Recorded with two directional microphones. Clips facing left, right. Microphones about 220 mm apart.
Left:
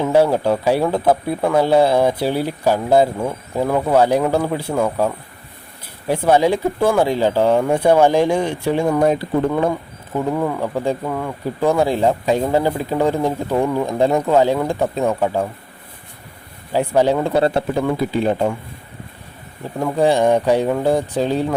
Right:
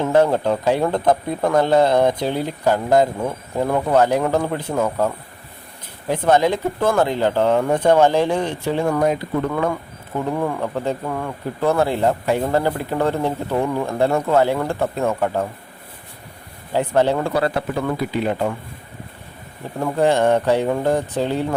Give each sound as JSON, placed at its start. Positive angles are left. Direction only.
{"t": 0.0, "sound": "speech", "side_deg": 10}
{"t": 9.0, "sound": "speech", "side_deg": 30}
{"t": 10.3, "sound": "speech", "side_deg": 5}
{"t": 16.7, "sound": "speech", "side_deg": 10}
{"t": 17.3, "sound": "speech", "side_deg": 25}
{"t": 20.0, "sound": "speech", "side_deg": 15}